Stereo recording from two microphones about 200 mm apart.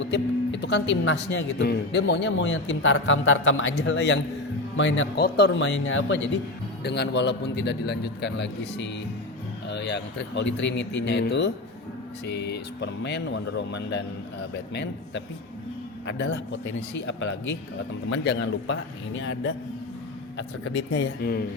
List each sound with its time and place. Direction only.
0.0 s speech: 60° left (ahead or behind)
6.8 s speech: 55° left (ahead or behind)